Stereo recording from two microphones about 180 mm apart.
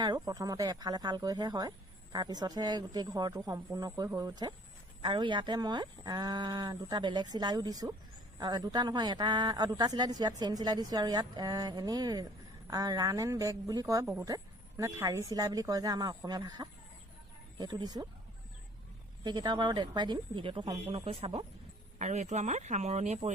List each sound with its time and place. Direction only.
0.0 s a woman's voice: 20° right (ahead or behind)
19.2 s a woman's voice: 25° right (ahead or behind); by 23.3 s 40° right (ahead or behind)